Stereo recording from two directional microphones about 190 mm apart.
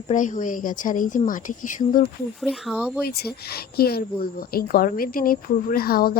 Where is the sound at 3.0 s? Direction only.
55° left (ahead or behind).